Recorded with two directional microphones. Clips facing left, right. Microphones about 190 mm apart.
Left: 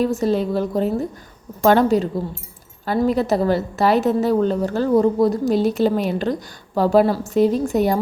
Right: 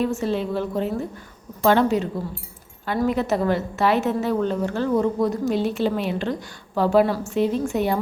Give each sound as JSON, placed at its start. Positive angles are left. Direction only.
{"t": 0.0, "sound": "a woman's voice", "side_deg": 40}